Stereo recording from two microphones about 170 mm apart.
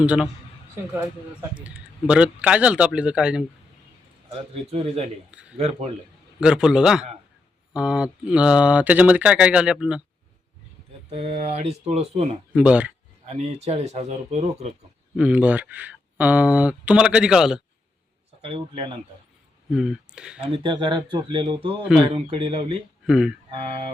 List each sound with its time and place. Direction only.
0.0 s speech: 5° right (ahead or behind)
4.3 s speech: 35° right (ahead or behind)
5.3 s a man's voice: 5° right (ahead or behind)
5.5 s speech: 40° right (ahead or behind)
6.4 s a man's voice: 5° right (ahead or behind)
11.1 s speech: 35° right (ahead or behind)
12.5 s speech: 10° right (ahead or behind)
13.2 s speech: 40° right (ahead or behind)
15.1 s speech: 5° right (ahead or behind)
18.4 s speech: 35° right (ahead or behind)
19.7 s a man's voice: centre (ahead or behind)
20.4 s speech: 30° right (ahead or behind)
23.0 s a man's voice: 5° right (ahead or behind)
23.5 s speech: 35° right (ahead or behind)